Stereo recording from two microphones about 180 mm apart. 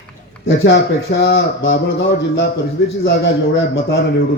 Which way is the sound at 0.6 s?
85° left.